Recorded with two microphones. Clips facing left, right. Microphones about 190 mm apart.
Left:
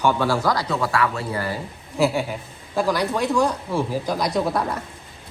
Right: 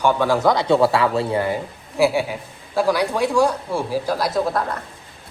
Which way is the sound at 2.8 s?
10° right (ahead or behind).